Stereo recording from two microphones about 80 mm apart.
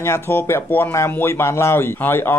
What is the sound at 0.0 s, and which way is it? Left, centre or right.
Speech, left.